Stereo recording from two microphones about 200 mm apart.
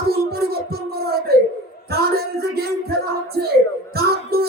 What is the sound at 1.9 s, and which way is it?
Speech, 50° right (ahead or behind).